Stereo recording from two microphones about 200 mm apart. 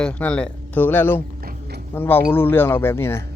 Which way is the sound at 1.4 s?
50° right (ahead or behind).